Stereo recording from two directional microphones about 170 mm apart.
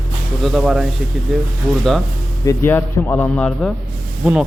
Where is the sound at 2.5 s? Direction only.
15° left (ahead or behind).